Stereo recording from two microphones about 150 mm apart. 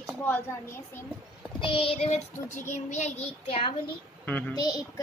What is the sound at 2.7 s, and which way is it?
Speech, 55° left (ahead or behind).